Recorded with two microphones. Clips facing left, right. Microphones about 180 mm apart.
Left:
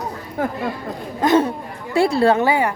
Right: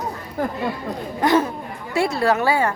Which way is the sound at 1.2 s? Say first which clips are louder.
Left 2 dB; 25° left (ahead or behind).